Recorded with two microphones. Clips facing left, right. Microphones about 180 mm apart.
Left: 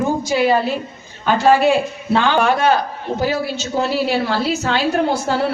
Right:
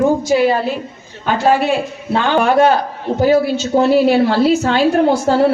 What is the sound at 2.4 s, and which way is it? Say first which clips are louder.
A woman's voice: right 4 dB; 50° right (ahead or behind).